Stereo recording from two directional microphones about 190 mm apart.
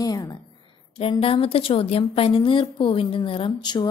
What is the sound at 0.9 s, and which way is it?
A woman's voice, 30° left (ahead or behind).